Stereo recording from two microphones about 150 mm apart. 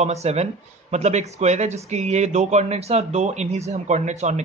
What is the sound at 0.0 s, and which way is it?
Speech, 45° right (ahead or behind).